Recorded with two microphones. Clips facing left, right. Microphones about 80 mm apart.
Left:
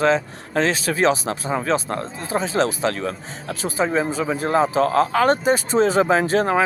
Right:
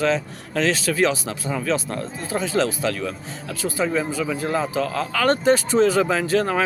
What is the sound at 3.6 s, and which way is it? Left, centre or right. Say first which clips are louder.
Speech: left 2 dB; left.